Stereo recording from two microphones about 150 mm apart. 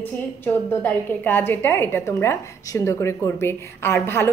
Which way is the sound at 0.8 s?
15° left (ahead or behind).